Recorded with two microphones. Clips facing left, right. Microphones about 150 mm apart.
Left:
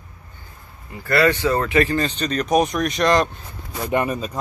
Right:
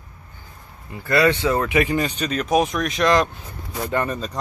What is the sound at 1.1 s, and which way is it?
Speech, 15° right (ahead or behind).